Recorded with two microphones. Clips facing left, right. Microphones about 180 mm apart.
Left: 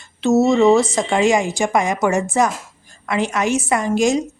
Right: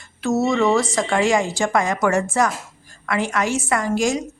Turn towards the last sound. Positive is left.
turn(degrees=20)  # may be behind; listen again after turning